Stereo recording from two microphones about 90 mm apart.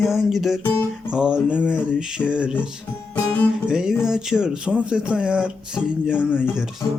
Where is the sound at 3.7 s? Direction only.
10° right (ahead or behind).